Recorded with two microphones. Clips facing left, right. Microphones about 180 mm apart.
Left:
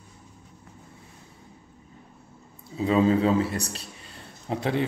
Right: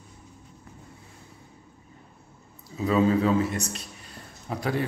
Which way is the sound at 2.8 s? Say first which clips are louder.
Left 1 dB; 30° left (ahead or behind).